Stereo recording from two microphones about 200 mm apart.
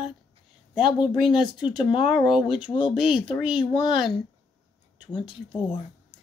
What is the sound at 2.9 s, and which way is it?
Speech, 5° right (ahead or behind).